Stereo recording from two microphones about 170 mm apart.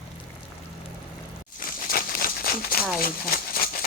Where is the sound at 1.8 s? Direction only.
60° left (ahead or behind).